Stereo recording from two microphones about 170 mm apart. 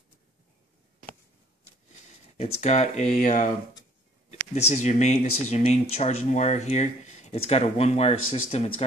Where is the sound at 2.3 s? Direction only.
40° left (ahead or behind).